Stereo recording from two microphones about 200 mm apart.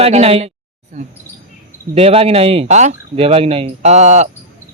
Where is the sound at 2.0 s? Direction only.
30° right (ahead or behind).